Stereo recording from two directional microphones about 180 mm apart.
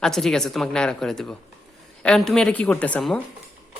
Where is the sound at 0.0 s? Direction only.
Centre (ahead or behind).